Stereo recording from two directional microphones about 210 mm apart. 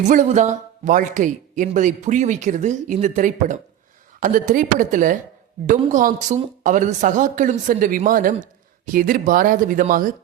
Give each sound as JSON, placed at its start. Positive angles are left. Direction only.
{"t": 0.1, "sound": "speech", "side_deg": -35}